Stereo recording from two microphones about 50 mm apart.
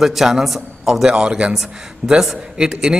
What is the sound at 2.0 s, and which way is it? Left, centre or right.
Speech, centre.